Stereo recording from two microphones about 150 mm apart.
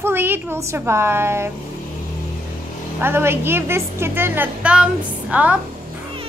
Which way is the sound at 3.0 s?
15° right (ahead or behind).